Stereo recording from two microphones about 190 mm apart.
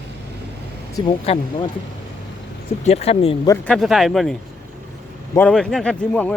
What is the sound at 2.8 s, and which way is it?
Speech, 35° left (ahead or behind).